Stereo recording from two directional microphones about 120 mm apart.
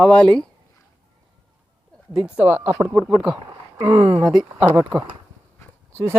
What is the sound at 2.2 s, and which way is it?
Speech, 10° right (ahead or behind).